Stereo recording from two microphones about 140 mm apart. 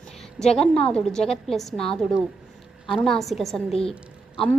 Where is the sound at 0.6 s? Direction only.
5° left (ahead or behind).